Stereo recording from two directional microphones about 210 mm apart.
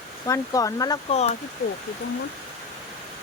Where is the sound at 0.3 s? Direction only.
15° left (ahead or behind).